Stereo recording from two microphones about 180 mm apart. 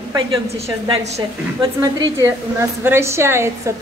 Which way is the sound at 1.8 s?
20° right (ahead or behind).